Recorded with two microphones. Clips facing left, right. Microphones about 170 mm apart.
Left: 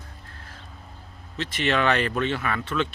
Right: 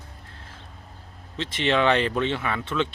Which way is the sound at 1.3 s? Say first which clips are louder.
Right 1 dB; 25° right (ahead or behind).